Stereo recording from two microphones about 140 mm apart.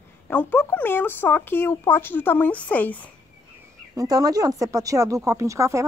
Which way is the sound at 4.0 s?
25° right (ahead or behind).